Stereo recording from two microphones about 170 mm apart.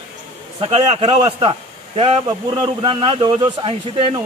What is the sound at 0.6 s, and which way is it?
A man's voice, 30° right (ahead or behind).